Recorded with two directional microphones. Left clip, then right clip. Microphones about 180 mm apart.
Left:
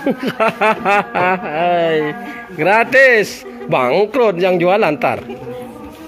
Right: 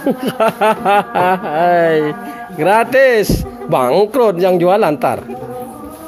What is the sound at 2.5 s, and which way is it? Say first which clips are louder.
Speech: even; 15° right (ahead or behind).